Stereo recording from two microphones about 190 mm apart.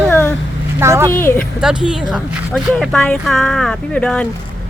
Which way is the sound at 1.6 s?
5° right (ahead or behind).